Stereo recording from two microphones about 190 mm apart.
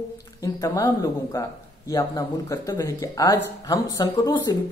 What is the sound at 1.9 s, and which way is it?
Speech, 15° left (ahead or behind).